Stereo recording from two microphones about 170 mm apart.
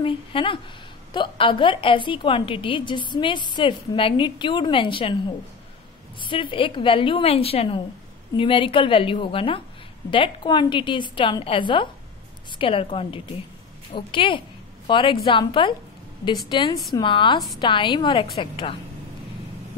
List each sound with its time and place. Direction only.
0.0 s a woman's voice: 30° left (ahead or behind)
6.2 s a woman's voice: 30° left (ahead or behind)